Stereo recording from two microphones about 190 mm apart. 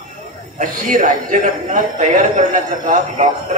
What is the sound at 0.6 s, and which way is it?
A man's voice, 45° right (ahead or behind).